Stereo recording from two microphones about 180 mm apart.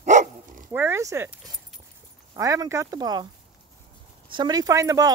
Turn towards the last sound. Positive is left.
turn(degrees=-15)  # may be behind; listen again after turning